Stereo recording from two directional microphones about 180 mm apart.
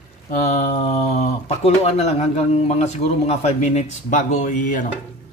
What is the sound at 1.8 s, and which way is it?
A man's voice, 35° left (ahead or behind).